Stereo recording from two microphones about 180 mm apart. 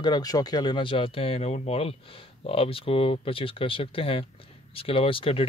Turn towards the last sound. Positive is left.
turn(degrees=30)  # may be behind; listen again after turning